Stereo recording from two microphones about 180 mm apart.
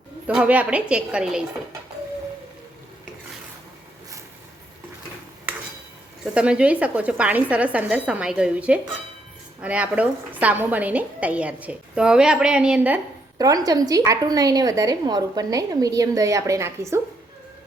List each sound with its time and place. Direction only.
0.3 s a woman's voice: 10° right (ahead or behind)
6.3 s a woman's voice: 5° right (ahead or behind)
13.4 s a woman's voice: 20° right (ahead or behind)